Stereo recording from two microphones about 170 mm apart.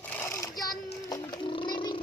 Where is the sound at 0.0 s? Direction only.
10° left (ahead or behind).